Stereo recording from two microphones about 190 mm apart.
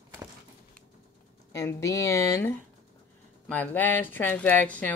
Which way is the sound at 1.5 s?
15° left (ahead or behind).